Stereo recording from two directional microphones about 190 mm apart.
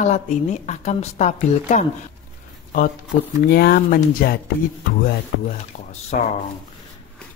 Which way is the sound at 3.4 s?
55° left (ahead or behind).